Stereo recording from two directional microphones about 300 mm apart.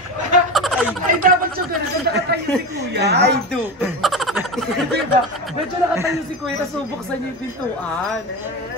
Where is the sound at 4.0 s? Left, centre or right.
Centre.